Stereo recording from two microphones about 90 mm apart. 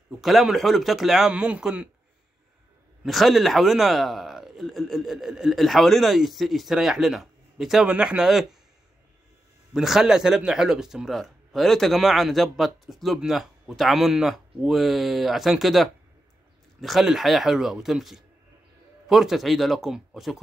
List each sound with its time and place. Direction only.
0.2 s a man's voice: 5° right (ahead or behind)
3.0 s a man's voice: centre (ahead or behind)
9.8 s a man's voice: 5° right (ahead or behind)